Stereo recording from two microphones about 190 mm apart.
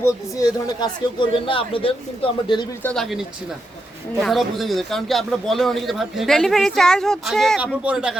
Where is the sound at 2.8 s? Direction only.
Centre (ahead or behind).